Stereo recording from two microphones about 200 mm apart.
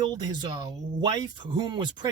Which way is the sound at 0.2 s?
20° right (ahead or behind).